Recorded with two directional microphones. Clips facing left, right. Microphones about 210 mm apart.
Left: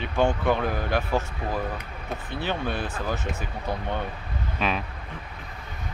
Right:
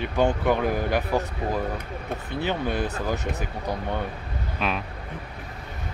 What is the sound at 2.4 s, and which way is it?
Speech, 15° right (ahead or behind).